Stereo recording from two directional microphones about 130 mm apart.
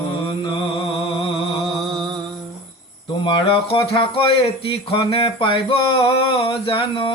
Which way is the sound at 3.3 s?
45° left (ahead or behind).